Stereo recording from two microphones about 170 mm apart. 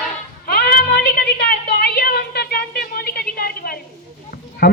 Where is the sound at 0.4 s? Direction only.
65° left (ahead or behind).